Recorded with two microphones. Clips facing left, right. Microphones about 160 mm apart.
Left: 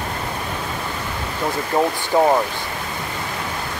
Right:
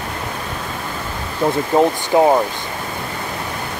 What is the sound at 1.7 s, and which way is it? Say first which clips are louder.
Speech: right 3 dB; 25° right (ahead or behind).